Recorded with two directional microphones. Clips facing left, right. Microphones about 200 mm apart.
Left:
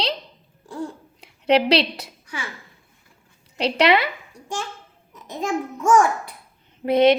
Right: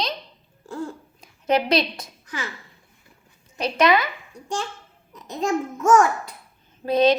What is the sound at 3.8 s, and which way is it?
Speech, 30° left (ahead or behind).